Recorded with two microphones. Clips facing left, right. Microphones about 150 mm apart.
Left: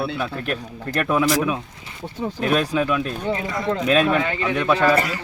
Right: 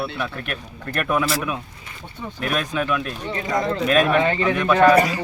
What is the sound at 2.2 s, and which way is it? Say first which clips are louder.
Speech: left 5 dB; 30° left (ahead or behind).